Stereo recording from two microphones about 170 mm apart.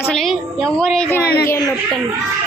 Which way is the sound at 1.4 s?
20° left (ahead or behind).